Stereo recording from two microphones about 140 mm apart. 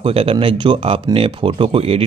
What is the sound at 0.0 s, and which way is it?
Speech, 40° right (ahead or behind).